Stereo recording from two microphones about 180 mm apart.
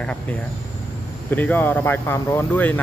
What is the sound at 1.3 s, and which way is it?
Speech, 10° left (ahead or behind).